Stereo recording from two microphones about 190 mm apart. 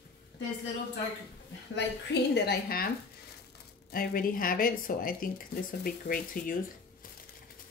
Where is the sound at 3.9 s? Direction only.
50° left (ahead or behind).